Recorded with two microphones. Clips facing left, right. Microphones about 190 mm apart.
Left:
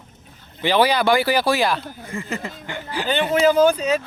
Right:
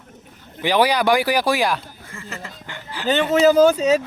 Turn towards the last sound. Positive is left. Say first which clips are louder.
# right 2 dB
turn(degrees=-40)  # may be behind; listen again after turning